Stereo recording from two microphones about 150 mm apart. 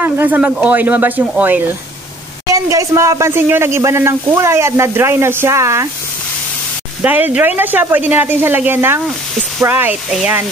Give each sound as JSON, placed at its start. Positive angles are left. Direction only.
{"t": 0.0, "sound": "speech", "side_deg": -15}
{"t": 7.0, "sound": "speech", "side_deg": -10}